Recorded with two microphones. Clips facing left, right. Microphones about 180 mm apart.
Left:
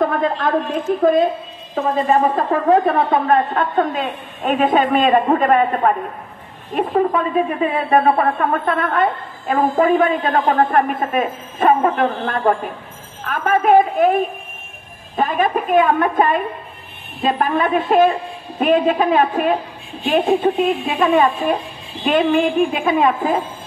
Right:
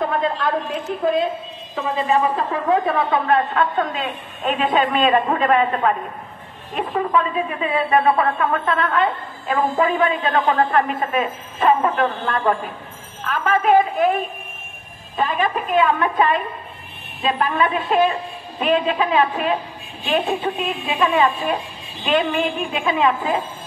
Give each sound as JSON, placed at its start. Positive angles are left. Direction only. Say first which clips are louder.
{"t": 0.0, "sound": "a woman's voice", "louder": "left 3 dB", "side_deg": 45}
{"t": 15.1, "sound": "a woman's voice", "louder": "left 3 dB", "side_deg": 45}
{"t": 20.4, "sound": "a woman's voice", "louder": "left 7 dB", "side_deg": 40}